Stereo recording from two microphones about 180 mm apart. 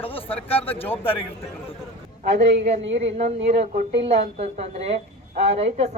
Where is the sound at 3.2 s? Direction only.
35° right (ahead or behind).